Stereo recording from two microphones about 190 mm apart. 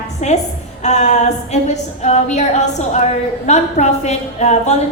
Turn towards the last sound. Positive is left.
turn(degrees=35)  # may be behind; listen again after turning